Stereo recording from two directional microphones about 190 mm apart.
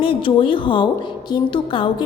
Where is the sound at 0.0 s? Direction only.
25° left (ahead or behind).